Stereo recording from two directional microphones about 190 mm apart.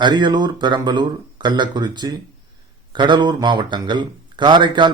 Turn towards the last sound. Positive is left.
turn(degrees=-25)  # may be behind; listen again after turning